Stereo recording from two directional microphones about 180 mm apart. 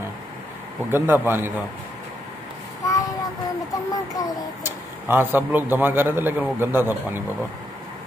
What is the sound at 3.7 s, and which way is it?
Speech, 20° left (ahead or behind).